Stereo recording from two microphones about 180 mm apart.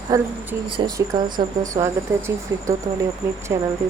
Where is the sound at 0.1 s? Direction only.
20° right (ahead or behind).